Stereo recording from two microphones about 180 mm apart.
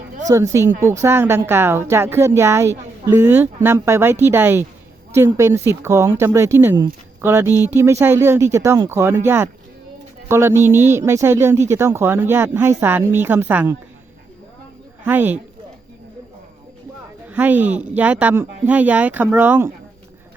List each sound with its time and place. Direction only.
0.3 s a woman's voice: 15° right (ahead or behind)
15.0 s a woman's voice: 10° right (ahead or behind)
17.2 s a woman's voice: 10° right (ahead or behind)